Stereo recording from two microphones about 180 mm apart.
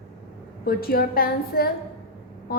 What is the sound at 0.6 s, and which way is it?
A woman's voice, 55° left (ahead or behind).